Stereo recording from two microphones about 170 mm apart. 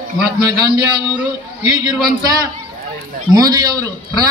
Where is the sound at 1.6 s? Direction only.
25° right (ahead or behind).